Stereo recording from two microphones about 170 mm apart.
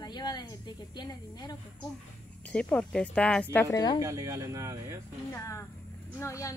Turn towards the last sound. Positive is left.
turn(degrees=20)  # may be behind; listen again after turning